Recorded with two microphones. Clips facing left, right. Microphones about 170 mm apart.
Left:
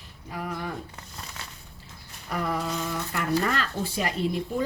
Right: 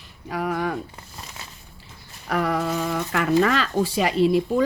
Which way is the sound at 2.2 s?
80° right.